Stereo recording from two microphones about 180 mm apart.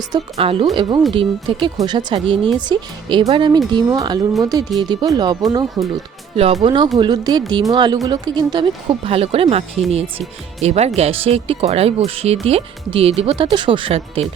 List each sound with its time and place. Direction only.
0.3 s speech: 30° right (ahead or behind)
6.3 s speech: 35° right (ahead or behind)